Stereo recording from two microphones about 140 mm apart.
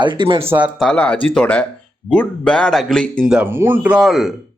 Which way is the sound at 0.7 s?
5° left (ahead or behind).